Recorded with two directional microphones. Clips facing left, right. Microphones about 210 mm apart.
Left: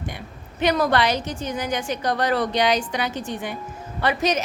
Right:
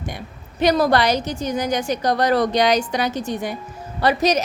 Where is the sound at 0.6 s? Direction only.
35° right (ahead or behind).